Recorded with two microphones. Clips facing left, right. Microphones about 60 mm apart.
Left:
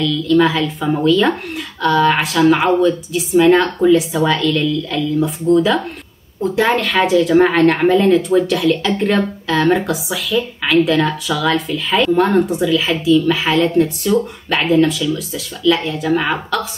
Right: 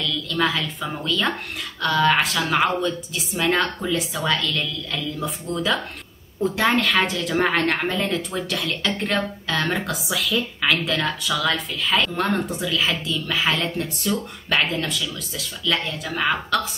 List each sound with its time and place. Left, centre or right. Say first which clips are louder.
0.3 s speech: left 10 dB; centre